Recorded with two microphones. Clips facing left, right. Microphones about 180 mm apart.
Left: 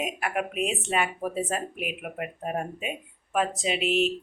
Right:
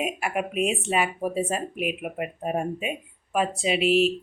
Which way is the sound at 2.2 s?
15° right (ahead or behind).